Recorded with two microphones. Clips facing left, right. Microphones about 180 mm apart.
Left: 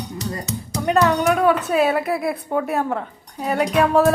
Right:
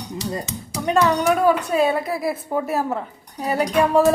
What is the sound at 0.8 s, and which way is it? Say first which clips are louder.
A woman's voice: left 1 dB; centre (ahead or behind).